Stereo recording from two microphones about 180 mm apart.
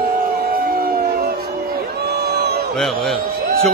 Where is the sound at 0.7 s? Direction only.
55° right (ahead or behind).